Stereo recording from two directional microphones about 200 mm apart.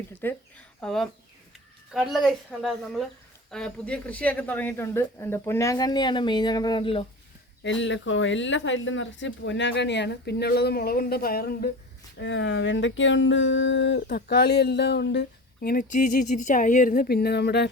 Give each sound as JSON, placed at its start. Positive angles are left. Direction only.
{"t": 0.2, "sound": "a woman's voice", "side_deg": 10}
{"t": 7.6, "sound": "speech", "side_deg": 65}
{"t": 12.2, "sound": "speech", "side_deg": 60}
{"t": 14.1, "sound": "speech", "side_deg": 50}